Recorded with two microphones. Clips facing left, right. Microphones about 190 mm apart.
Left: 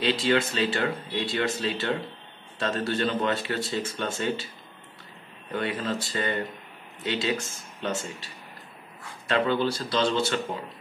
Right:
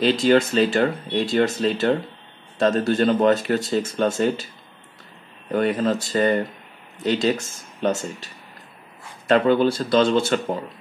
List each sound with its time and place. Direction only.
0.0 s speech: 45° right (ahead or behind)
5.5 s speech: 45° right (ahead or behind)
9.3 s speech: 50° right (ahead or behind)